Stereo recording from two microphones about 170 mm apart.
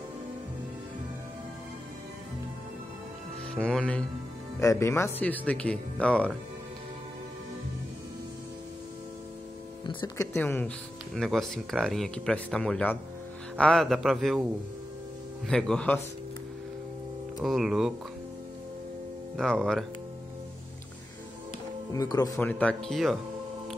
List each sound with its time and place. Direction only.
3.6 s speech: 5° left (ahead or behind)
9.8 s speech: 25° left (ahead or behind)
10.3 s speech: 10° left (ahead or behind)
11.1 s speech: centre (ahead or behind)
15.4 s speech: 5° left (ahead or behind)
17.4 s speech: centre (ahead or behind)
19.3 s speech: centre (ahead or behind)
21.9 s speech: 20° left (ahead or behind)
22.4 s speech: 10° left (ahead or behind)